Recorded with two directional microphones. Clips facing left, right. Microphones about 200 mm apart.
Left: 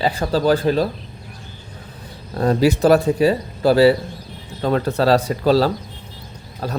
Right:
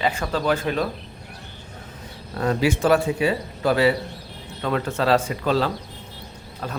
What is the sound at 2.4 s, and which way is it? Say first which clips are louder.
A man's voice: left 5 dB; 35° left (ahead or behind).